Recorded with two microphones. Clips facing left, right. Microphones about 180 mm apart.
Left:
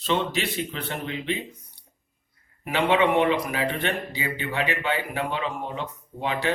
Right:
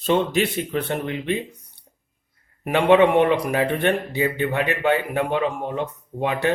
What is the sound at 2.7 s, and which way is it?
Speech, 55° right (ahead or behind).